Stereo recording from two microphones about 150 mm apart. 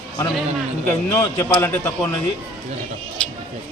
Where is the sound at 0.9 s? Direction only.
20° left (ahead or behind).